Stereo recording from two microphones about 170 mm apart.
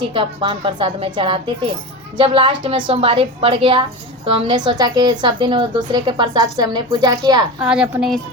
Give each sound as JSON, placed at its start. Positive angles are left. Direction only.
{"t": 0.0, "sound": "a woman's voice", "side_deg": -30}
{"t": 7.6, "sound": "a woman's voice", "side_deg": -5}